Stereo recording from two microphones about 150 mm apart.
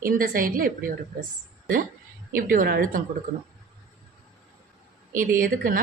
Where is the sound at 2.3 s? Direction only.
70° right (ahead or behind).